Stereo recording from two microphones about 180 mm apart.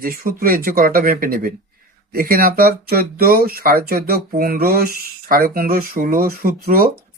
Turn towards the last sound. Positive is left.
turn(degrees=-55)  # may be behind; listen again after turning